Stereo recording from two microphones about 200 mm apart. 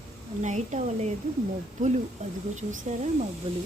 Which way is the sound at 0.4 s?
35° right (ahead or behind).